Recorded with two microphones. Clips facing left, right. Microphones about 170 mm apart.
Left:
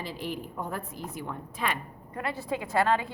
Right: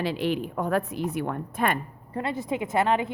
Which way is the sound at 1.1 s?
60° right (ahead or behind).